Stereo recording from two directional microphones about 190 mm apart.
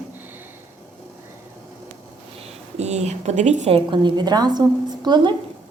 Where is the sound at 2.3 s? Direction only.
30° right (ahead or behind).